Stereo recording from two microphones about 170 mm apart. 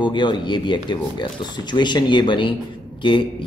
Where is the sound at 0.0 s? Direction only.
25° left (ahead or behind).